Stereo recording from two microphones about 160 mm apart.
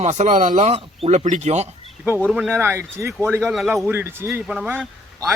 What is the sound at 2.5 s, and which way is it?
Speech, 15° right (ahead or behind).